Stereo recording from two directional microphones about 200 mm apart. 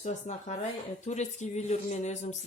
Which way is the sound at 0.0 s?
35° left (ahead or behind).